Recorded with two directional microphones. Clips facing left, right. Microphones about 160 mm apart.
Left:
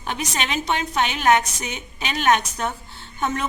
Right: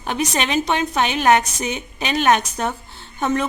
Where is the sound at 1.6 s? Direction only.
40° right (ahead or behind).